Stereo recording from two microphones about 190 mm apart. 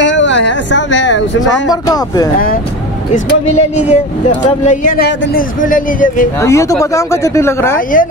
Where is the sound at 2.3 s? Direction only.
50° left (ahead or behind).